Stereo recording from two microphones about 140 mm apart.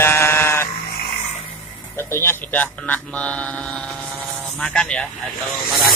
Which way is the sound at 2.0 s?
15° left (ahead or behind).